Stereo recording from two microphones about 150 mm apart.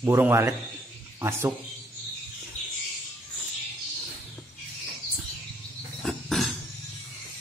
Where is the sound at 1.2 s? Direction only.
15° right (ahead or behind).